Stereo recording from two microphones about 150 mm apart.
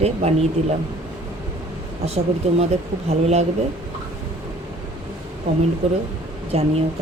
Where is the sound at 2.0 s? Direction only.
45° right (ahead or behind).